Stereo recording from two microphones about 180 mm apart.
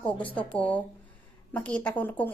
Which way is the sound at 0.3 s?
10° left (ahead or behind).